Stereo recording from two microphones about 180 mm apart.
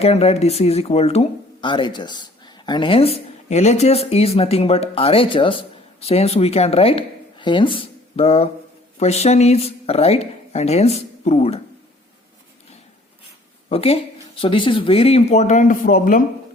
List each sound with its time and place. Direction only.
0.0 s speech: 35° left (ahead or behind)
13.7 s speech: 35° left (ahead or behind); by 16.2 s 50° left (ahead or behind)